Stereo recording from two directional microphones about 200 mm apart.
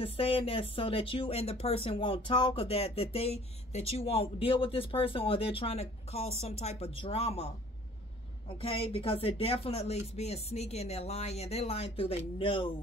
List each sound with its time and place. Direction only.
0.0 s speech: 30° left (ahead or behind)
8.5 s speech: 30° left (ahead or behind)